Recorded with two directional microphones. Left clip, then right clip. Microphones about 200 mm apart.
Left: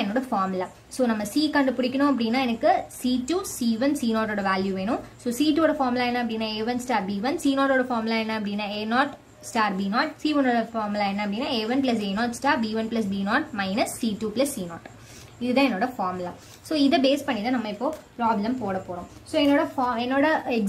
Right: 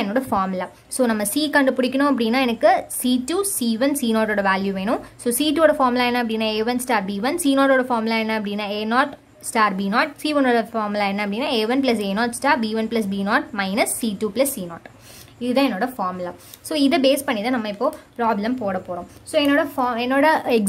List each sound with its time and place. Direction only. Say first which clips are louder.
0.0 s a woman's voice: right 4 dB; 35° right (ahead or behind)